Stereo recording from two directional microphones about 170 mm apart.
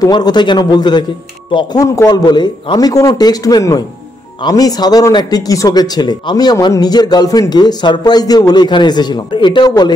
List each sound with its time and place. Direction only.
0.0 s speech: 25° left (ahead or behind)